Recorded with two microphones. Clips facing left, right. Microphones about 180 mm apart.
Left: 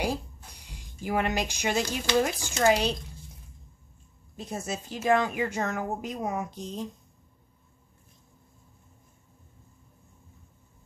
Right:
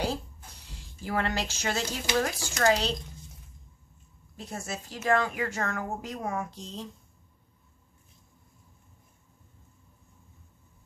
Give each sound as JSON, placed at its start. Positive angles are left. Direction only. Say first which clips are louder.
{"t": 0.0, "sound": "a sound", "louder": "left 1 dB", "side_deg": 15}
{"t": 2.1, "sound": "speech", "louder": "left 3 dB", "side_deg": 20}
{"t": 4.4, "sound": "a woman's voice", "louder": "left 3 dB", "side_deg": 20}